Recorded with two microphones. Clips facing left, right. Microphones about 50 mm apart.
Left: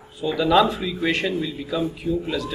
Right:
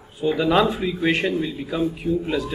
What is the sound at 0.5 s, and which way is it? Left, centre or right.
Speech, centre.